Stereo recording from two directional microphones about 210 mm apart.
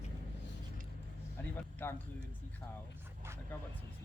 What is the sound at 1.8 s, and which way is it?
Speech, 10° left (ahead or behind).